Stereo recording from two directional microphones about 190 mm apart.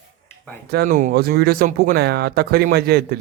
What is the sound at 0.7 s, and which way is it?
Speech, 50° right (ahead or behind).